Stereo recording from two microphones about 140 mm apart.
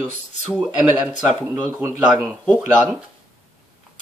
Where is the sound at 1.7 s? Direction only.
20° right (ahead or behind).